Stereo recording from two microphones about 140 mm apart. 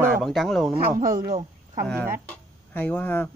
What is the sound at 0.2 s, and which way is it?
Speech, centre (ahead or behind).